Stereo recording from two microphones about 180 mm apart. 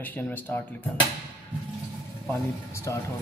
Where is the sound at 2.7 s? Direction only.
15° left (ahead or behind).